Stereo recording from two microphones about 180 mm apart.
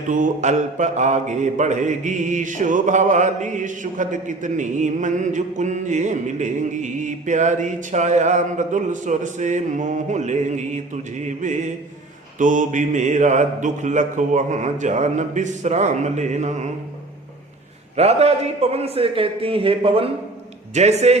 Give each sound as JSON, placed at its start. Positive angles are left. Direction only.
{"t": 0.1, "sound": "mantra", "side_deg": -45}
{"t": 17.9, "sound": "mantra", "side_deg": -35}